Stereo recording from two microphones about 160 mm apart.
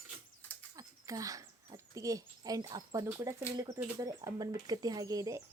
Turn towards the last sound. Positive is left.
turn(degrees=-20)  # may be behind; listen again after turning